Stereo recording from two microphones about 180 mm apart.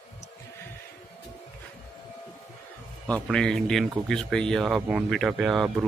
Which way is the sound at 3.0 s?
5° left (ahead or behind).